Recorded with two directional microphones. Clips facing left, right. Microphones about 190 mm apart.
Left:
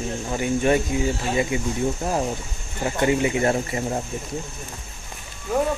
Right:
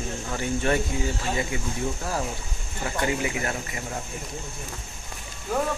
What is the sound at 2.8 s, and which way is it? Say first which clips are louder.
Speech: left 6 dB; 25° left (ahead or behind).